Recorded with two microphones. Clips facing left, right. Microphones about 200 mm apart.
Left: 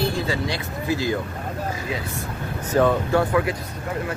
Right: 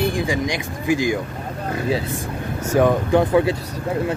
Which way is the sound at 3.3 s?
25° right (ahead or behind).